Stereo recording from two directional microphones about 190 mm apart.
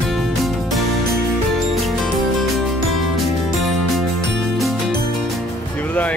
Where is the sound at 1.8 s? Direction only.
Centre (ahead or behind).